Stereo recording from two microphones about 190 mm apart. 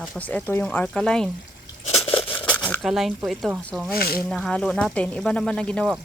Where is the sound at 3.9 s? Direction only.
55° left (ahead or behind).